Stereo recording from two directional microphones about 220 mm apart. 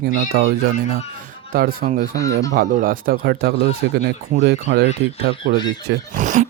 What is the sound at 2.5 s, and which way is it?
Speech, 40° right (ahead or behind).